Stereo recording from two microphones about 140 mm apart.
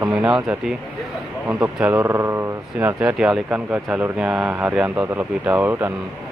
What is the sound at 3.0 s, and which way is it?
Speech, 5° right (ahead or behind).